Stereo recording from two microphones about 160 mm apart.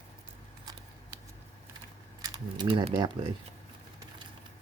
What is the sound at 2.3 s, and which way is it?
Speech, 30° right (ahead or behind).